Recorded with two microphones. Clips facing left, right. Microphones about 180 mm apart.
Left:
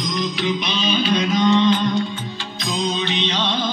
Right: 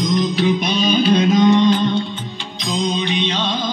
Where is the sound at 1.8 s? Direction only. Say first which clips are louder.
Right 2 dB; 30° right (ahead or behind).